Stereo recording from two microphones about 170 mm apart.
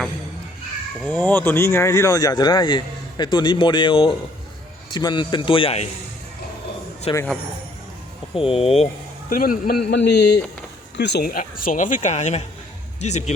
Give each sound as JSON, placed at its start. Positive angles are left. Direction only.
{"t": 1.0, "sound": "speech", "side_deg": 10}
{"t": 7.1, "sound": "speech", "side_deg": 35}
{"t": 8.4, "sound": "speech", "side_deg": 35}
{"t": 9.3, "sound": "a man's voice", "side_deg": 55}
{"t": 9.9, "sound": "a man's voice", "side_deg": 85}
{"t": 11.3, "sound": "speech", "side_deg": 55}